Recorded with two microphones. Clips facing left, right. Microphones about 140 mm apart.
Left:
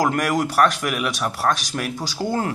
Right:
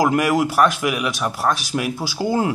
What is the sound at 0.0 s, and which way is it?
Speech, 5° right (ahead or behind).